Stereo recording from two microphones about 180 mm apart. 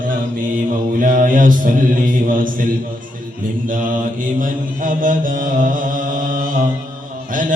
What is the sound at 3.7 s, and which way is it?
Mantra, 50° right (ahead or behind).